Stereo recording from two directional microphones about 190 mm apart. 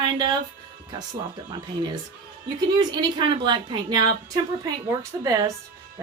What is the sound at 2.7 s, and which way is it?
A woman's voice, 25° right (ahead or behind).